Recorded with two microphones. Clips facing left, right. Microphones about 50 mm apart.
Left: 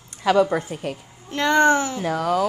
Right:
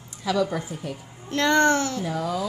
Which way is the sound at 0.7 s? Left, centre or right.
Left.